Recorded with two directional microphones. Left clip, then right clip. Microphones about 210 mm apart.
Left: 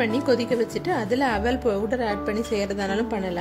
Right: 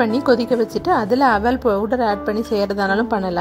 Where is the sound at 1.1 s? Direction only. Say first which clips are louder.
Right 6 dB; 20° right (ahead or behind).